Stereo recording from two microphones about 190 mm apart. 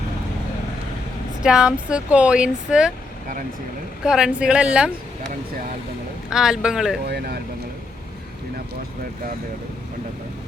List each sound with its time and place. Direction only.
1.4 s speech: 5° right (ahead or behind)
4.0 s speech: 5° right (ahead or behind)
6.3 s speech: 5° right (ahead or behind)
7.1 s speech: 55° right (ahead or behind)